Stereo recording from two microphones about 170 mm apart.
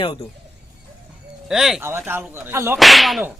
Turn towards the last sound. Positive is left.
turn(degrees=0)  # may be behind; listen again after turning